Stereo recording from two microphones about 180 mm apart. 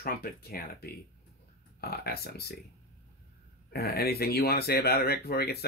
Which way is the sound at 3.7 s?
60° left (ahead or behind).